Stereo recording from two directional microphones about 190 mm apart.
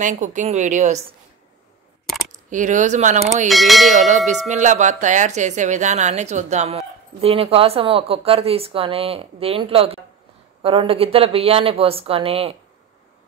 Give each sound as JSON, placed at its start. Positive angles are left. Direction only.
{"t": 0.0, "sound": "a woman's voice", "side_deg": -40}
{"t": 2.3, "sound": "a woman's voice", "side_deg": -40}
{"t": 3.4, "sound": "bell", "side_deg": 0}
{"t": 4.5, "sound": "a woman's voice", "side_deg": -40}